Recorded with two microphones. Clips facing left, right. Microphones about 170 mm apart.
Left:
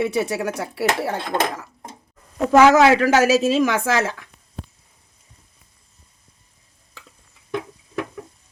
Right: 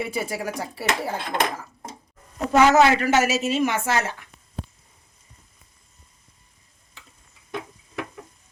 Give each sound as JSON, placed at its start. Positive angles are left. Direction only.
{"t": 0.0, "sound": "speech", "side_deg": 75}
{"t": 2.5, "sound": "a woman's voice", "side_deg": 90}